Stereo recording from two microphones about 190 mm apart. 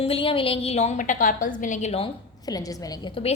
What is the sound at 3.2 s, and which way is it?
Speech, 30° left (ahead or behind).